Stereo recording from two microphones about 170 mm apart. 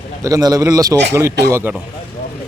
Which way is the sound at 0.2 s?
20° right (ahead or behind).